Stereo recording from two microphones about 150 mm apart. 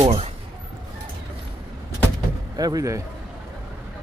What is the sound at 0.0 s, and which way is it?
Speech, 40° right (ahead or behind).